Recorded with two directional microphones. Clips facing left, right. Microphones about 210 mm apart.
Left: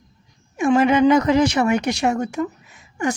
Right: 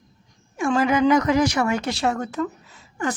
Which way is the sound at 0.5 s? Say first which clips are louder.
Left 4 dB; 20° left (ahead or behind).